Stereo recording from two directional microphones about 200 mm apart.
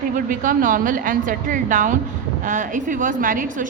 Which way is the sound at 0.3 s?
45° right (ahead or behind).